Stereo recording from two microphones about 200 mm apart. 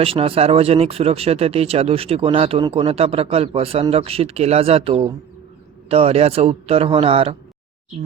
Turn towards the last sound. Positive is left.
turn(degrees=-30)  # may be behind; listen again after turning